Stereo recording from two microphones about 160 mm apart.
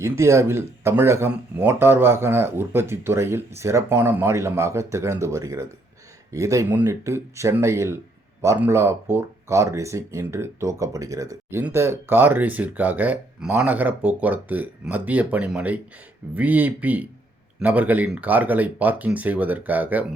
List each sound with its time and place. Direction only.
0.0 s speech: 15° right (ahead or behind)